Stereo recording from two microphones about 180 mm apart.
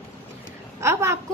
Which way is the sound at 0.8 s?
15° right (ahead or behind).